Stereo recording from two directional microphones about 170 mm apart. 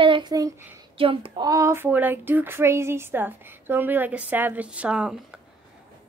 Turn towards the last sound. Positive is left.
turn(degrees=-5)  # may be behind; listen again after turning